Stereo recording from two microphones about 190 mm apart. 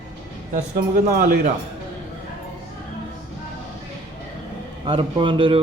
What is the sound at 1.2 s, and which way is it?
Speech, 45° right (ahead or behind).